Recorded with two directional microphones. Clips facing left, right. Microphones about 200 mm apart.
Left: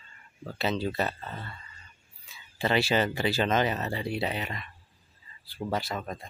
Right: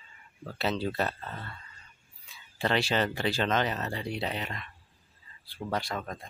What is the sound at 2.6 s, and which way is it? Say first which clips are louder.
Speech: left 2 dB; 5° left (ahead or behind).